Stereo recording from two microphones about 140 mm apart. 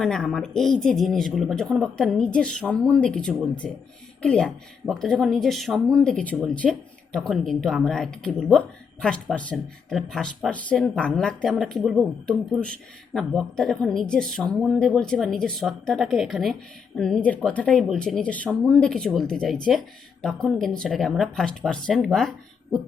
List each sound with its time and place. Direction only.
0.0 s speech: 5° left (ahead or behind)